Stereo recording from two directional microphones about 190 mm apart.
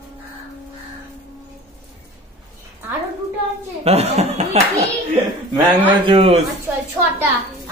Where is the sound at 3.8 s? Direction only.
35° right (ahead or behind).